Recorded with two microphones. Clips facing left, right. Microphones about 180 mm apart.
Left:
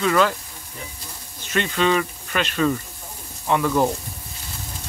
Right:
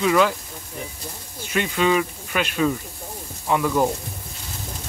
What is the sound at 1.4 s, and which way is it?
Speech, 10° right (ahead or behind).